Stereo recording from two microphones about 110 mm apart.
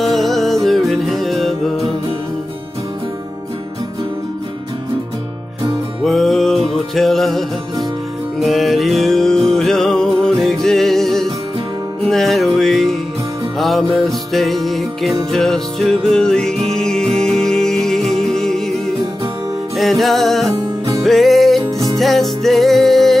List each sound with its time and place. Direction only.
0.0 s music: centre (ahead or behind)
6.0 s music: centre (ahead or behind)
19.8 s music: centre (ahead or behind)
21.6 s music: 25° right (ahead or behind)
21.9 s music: centre (ahead or behind)